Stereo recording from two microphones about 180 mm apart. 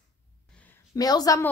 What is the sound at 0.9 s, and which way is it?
Speech, 20° left (ahead or behind).